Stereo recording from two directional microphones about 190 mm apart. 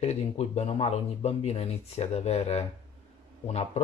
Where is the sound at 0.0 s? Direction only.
35° left (ahead or behind).